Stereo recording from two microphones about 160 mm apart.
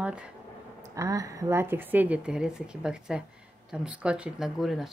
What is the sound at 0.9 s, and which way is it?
A woman's voice, 20° right (ahead or behind).